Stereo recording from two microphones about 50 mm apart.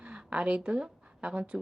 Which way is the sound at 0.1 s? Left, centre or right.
Right.